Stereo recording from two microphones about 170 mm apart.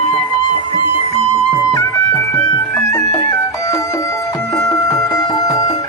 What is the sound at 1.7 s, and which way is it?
Music, 20° left (ahead or behind).